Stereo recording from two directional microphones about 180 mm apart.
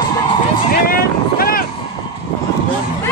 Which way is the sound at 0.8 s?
55° left (ahead or behind).